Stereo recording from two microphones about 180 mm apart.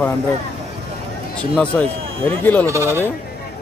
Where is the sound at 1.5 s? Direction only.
5° left (ahead or behind).